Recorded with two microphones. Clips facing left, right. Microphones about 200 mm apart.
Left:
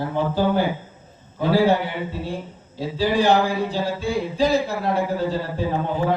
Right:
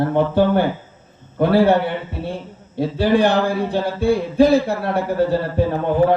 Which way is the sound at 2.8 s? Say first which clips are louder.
Right 5 dB; 60° right (ahead or behind).